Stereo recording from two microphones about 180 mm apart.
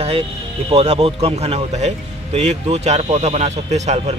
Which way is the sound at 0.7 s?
35° right (ahead or behind).